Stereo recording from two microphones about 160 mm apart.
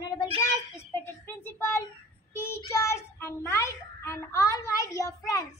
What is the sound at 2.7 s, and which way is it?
A child's voice, 15° left (ahead or behind).